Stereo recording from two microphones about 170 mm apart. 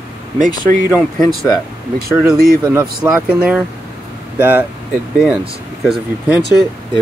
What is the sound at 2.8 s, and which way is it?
Speech, 5° right (ahead or behind).